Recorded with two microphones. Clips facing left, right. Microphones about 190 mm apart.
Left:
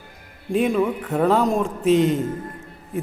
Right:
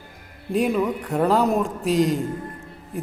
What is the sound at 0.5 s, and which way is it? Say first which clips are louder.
A man's voice: left 1 dB; centre (ahead or behind).